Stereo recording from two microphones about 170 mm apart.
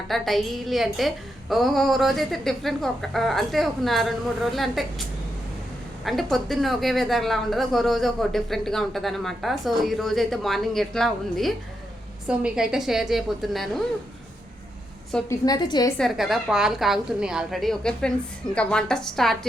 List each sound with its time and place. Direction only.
0.1 s a woman's voice: centre (ahead or behind)
6.1 s a woman's voice: centre (ahead or behind)
15.3 s a woman's voice: 25° left (ahead or behind)
16.0 s a woman's voice: centre (ahead or behind)